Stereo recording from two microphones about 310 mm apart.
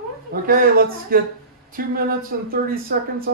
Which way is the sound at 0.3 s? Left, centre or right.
Right.